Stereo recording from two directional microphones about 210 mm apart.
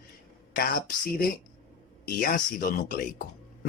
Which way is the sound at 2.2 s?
40° left (ahead or behind).